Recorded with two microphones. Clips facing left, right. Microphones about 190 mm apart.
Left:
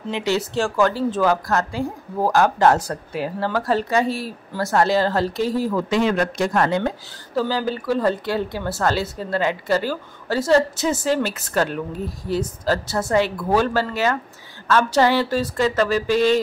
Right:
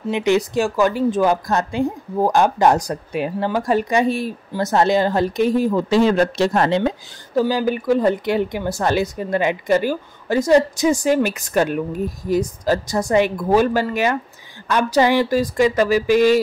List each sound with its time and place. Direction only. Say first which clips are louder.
0.1 s a woman's voice: right 5 dB; 15° right (ahead or behind)
5.9 s speech: right 4 dB; 35° right (ahead or behind)
7.3 s a woman's voice: right 4 dB; 15° right (ahead or behind)